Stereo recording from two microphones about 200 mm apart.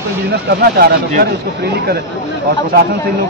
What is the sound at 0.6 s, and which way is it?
Speech, 45° right (ahead or behind).